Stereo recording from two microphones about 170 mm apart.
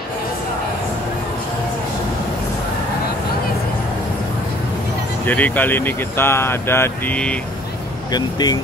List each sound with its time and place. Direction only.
5.2 s speech: 10° left (ahead or behind)
8.1 s speech: 25° left (ahead or behind)